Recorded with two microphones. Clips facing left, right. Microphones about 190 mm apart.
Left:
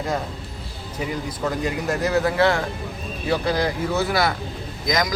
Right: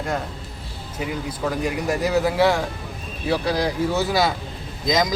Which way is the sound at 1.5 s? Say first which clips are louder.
Right 1 dB; 10° right (ahead or behind).